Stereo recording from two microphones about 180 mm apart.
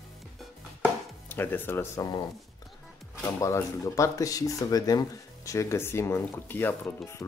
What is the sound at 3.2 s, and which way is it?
Speech, 15° left (ahead or behind).